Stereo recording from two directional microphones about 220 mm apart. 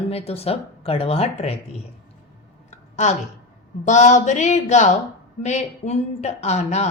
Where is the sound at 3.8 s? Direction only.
30° left (ahead or behind).